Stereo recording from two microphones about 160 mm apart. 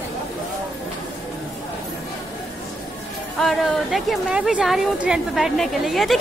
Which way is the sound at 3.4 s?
Centre (ahead or behind).